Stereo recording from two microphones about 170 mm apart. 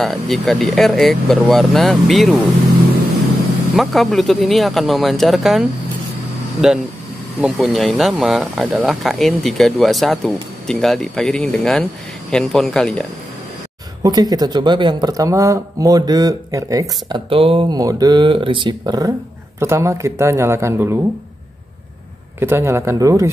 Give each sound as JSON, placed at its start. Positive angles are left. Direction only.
{"t": 0.0, "sound": "speech", "side_deg": 0}
{"t": 3.7, "sound": "speech", "side_deg": 0}
{"t": 14.0, "sound": "speech", "side_deg": -25}
{"t": 17.1, "sound": "speech", "side_deg": -30}
{"t": 22.4, "sound": "speech", "side_deg": -15}